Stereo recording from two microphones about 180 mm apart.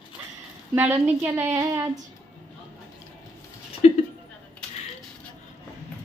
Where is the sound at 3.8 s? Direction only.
35° left (ahead or behind).